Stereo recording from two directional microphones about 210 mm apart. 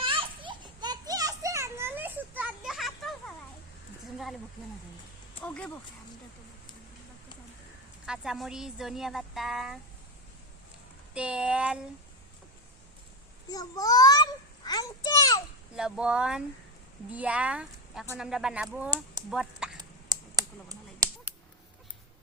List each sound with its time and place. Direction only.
0.0 s children playing: 25° right (ahead or behind); by 3.3 s centre (ahead or behind)
5.4 s speech: 5° left (ahead or behind)
8.0 s a woman's voice: 5° right (ahead or behind)
11.1 s a woman's voice: 5° right (ahead or behind)
13.5 s a sound: 15° left (ahead or behind)
15.7 s a woman's voice: 5° right (ahead or behind)
18.9 s a sound: 20° right (ahead or behind)
19.3 s duck: 5° right (ahead or behind)
20.1 s a sound: 20° right (ahead or behind)